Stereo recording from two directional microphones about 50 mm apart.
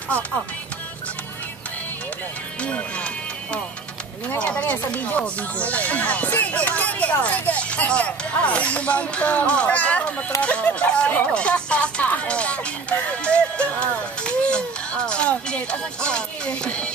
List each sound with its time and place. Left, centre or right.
2.6 s speech: left
4.4 s speech: left